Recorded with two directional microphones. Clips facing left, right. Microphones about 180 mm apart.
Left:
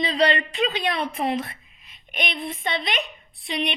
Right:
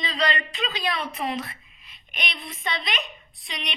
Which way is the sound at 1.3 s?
45° left (ahead or behind).